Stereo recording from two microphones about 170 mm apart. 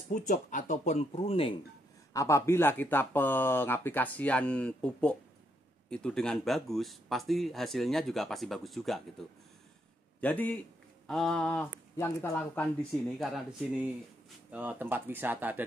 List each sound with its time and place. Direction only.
0.1 s speech: 50° left (ahead or behind)
2.1 s speech: 15° left (ahead or behind); by 9.0 s centre (ahead or behind)
10.2 s speech: 10° left (ahead or behind); by 15.6 s 10° right (ahead or behind)